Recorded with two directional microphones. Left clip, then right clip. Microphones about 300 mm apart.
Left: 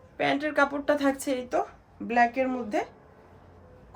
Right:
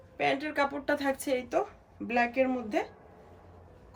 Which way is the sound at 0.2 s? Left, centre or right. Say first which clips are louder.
Left 4 dB; centre.